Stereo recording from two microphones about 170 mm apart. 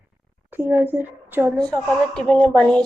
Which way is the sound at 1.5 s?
5° left (ahead or behind).